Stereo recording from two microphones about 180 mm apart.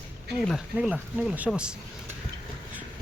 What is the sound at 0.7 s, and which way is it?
Speech, 5° right (ahead or behind).